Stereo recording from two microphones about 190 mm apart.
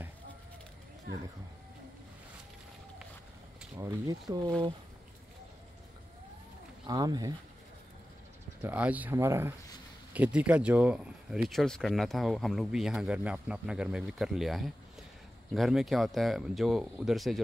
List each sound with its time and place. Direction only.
3.7 s speech: 20° right (ahead or behind)
6.9 s speech: 20° right (ahead or behind)
8.6 s speech: 10° right (ahead or behind)